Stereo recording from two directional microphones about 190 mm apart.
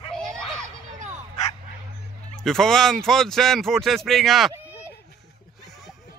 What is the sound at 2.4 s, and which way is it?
Speech, centre (ahead or behind).